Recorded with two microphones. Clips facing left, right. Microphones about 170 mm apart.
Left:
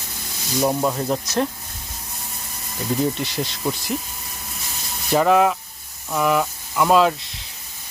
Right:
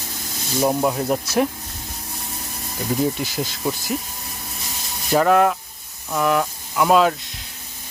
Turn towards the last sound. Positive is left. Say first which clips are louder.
# even
turn(degrees=0)  # may be behind; listen again after turning